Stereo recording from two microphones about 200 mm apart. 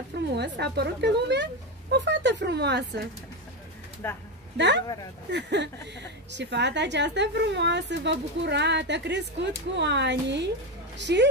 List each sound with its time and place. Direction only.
0.3 s a woman's voice: 55° right (ahead or behind)
4.0 s speech: 10° left (ahead or behind)
4.6 s a woman's voice: 60° right (ahead or behind)